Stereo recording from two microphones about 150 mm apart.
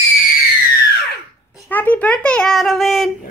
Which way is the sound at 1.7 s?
10° left (ahead or behind).